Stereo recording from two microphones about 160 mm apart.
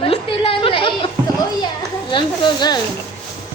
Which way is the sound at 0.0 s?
35° left (ahead or behind).